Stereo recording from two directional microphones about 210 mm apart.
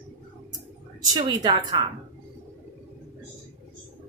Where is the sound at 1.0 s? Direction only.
20° right (ahead or behind).